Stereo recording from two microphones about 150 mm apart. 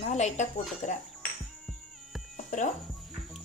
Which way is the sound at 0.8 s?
60° left (ahead or behind).